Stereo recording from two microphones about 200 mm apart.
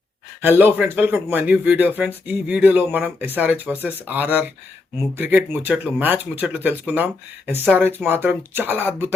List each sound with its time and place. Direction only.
0.4 s speech: 10° right (ahead or behind)